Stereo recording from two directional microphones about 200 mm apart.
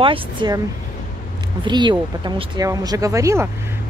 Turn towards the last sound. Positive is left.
turn(degrees=-15)  # may be behind; listen again after turning